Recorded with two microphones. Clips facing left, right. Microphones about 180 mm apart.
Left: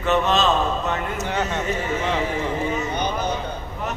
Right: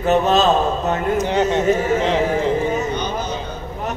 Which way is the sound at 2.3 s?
40° right (ahead or behind).